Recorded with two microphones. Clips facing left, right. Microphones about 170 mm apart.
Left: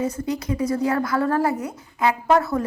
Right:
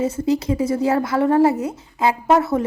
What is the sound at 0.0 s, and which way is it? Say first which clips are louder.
A woman's voice: right 5 dB; 25° right (ahead or behind).